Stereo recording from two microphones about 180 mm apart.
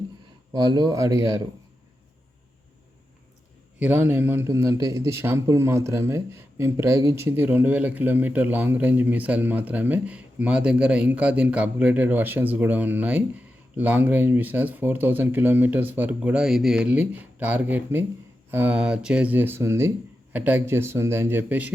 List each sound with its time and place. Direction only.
0.5 s speech: 25° right (ahead or behind)
3.8 s speech: 10° right (ahead or behind)